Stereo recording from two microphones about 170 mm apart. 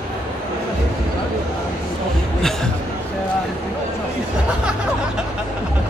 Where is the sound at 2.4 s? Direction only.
Centre (ahead or behind).